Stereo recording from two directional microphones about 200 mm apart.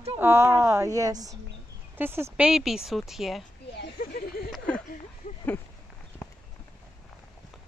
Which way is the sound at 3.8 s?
50° left (ahead or behind).